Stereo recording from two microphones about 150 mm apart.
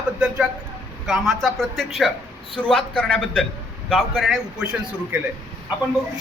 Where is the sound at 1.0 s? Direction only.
Centre (ahead or behind).